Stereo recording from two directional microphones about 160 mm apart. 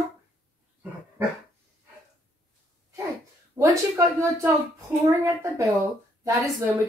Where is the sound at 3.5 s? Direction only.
20° right (ahead or behind).